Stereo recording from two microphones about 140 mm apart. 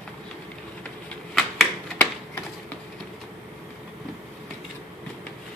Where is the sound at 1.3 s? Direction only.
Centre (ahead or behind).